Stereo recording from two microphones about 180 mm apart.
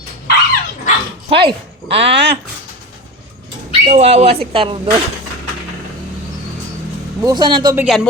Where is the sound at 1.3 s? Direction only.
70° right (ahead or behind).